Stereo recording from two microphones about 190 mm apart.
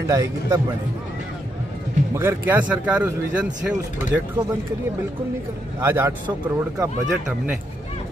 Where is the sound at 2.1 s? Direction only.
10° right (ahead or behind).